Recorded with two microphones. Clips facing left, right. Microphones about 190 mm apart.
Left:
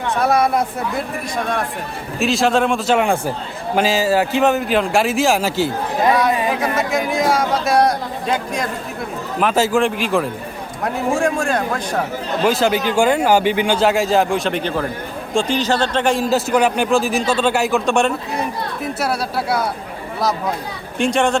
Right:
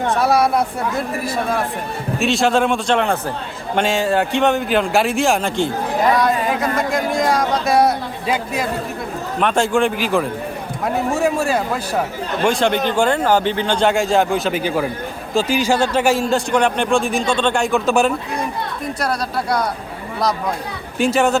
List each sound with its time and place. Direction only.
0.2 s a man's voice: centre (ahead or behind)
2.1 s a man's voice: centre (ahead or behind)
12.5 s a man's voice: 5° left (ahead or behind)
21.0 s a man's voice: 5° right (ahead or behind)